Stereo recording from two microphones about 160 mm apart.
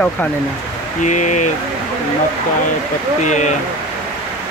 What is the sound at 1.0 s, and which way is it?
Speech, 50° left (ahead or behind).